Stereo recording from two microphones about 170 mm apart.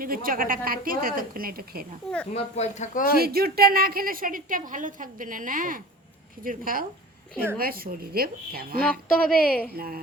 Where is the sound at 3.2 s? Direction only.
65° right (ahead or behind).